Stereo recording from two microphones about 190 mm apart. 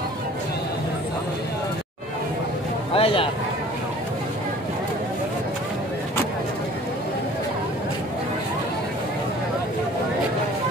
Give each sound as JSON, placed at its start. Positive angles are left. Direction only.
{"t": 2.9, "sound": "speech", "side_deg": 30}